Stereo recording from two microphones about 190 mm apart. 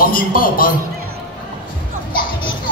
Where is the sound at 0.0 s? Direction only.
45° left (ahead or behind).